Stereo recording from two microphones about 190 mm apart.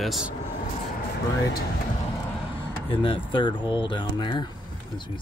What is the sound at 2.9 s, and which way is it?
Speech, 25° left (ahead or behind).